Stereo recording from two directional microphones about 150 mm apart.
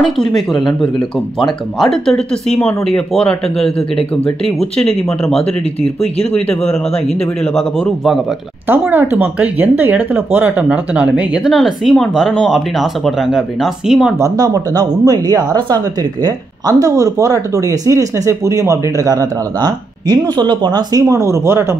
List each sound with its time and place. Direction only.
0.0 s speech: centre (ahead or behind)
8.6 s speech: 15° right (ahead or behind)
14.1 s speech: 20° right (ahead or behind)